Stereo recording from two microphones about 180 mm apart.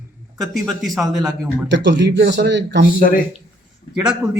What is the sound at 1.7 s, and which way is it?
Speech, 80° right.